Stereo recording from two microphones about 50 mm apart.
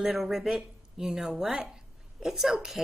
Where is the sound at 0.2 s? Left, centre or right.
Centre.